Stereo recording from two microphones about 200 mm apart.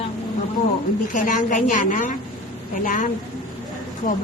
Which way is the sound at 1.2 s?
40° left (ahead or behind).